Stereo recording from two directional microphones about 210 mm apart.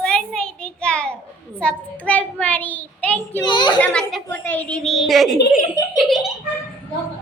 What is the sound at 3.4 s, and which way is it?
Speech, 20° left (ahead or behind).